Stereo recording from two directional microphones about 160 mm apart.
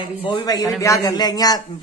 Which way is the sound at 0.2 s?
25° left (ahead or behind).